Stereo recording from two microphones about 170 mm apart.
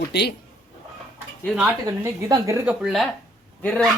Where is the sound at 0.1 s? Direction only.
75° left (ahead or behind).